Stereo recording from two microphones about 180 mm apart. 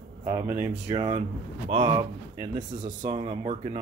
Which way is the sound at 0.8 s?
30° right (ahead or behind).